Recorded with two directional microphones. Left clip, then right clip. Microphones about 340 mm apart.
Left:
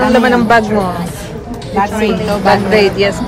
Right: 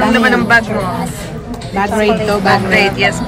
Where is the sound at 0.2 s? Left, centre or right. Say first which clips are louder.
Left 1 dB; centre.